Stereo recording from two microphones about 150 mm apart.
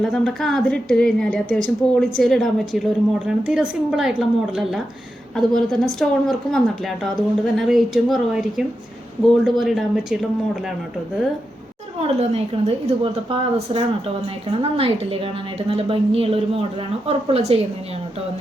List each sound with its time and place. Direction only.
0.0 s a woman's voice: 5° left (ahead or behind)
12.0 s a woman's voice: 40° right (ahead or behind)